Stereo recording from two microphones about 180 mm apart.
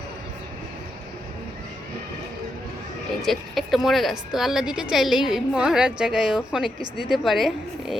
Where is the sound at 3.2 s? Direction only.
Centre (ahead or behind).